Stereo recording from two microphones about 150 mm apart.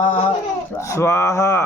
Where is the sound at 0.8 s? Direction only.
20° left (ahead or behind).